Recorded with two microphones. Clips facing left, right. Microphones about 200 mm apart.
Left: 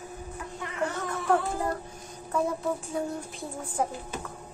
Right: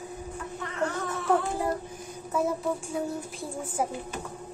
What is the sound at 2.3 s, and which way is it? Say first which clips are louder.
A child's voice: right 1 dB; centre (ahead or behind).